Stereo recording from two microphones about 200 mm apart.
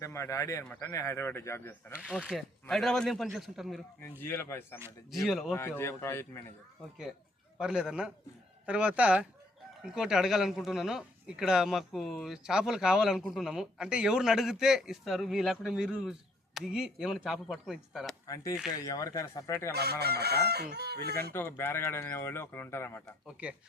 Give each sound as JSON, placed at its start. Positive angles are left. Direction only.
{"t": 0.0, "sound": "a man's voice", "side_deg": 15}
{"t": 1.9, "sound": "speech", "side_deg": -5}
{"t": 4.2, "sound": "a man's voice", "side_deg": 15}
{"t": 5.2, "sound": "speech", "side_deg": 0}
{"t": 5.5, "sound": "a man's voice", "side_deg": 10}
{"t": 7.6, "sound": "speech", "side_deg": -5}
{"t": 18.8, "sound": "a man's voice", "side_deg": 15}
{"t": 19.7, "sound": "chicken", "side_deg": -55}
{"t": 21.3, "sound": "a man's voice", "side_deg": 10}
{"t": 23.2, "sound": "speech", "side_deg": -5}